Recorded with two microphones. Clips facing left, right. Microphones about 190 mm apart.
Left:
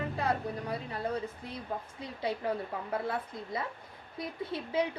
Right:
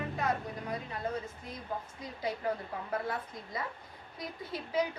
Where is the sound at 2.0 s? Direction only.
30° left (ahead or behind).